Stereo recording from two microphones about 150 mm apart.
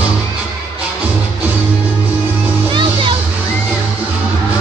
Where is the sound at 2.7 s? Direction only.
35° right (ahead or behind).